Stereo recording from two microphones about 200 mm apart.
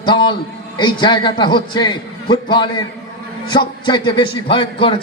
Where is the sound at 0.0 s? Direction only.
25° left (ahead or behind).